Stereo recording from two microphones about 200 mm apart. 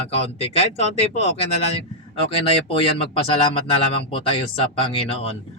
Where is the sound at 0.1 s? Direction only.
30° left (ahead or behind).